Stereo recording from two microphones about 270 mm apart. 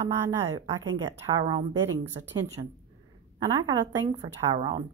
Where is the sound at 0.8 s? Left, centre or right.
Centre.